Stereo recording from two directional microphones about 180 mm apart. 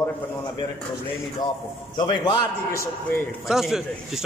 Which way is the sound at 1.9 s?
25° left (ahead or behind).